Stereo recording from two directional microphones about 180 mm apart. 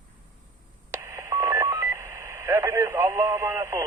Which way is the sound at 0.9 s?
15° right (ahead or behind).